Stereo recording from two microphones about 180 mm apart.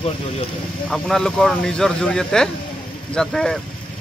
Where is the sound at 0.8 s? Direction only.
Centre (ahead or behind).